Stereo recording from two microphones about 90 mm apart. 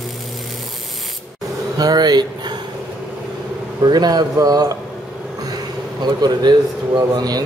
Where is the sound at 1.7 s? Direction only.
50° right (ahead or behind).